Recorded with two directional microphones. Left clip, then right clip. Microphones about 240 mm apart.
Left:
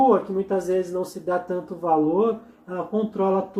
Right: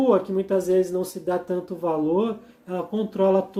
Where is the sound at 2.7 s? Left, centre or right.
Right.